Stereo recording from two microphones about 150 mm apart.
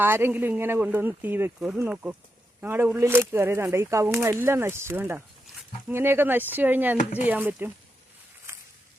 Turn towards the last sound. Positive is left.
turn(degrees=-10)  # may be behind; listen again after turning